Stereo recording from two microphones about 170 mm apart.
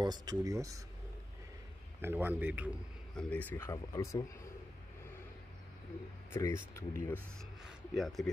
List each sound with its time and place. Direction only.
0.0 s speech: 25° right (ahead or behind)
2.0 s a man's voice: 10° right (ahead or behind)
3.2 s speech: 10° left (ahead or behind)
6.3 s speech: 15° left (ahead or behind)
7.3 s speech: centre (ahead or behind)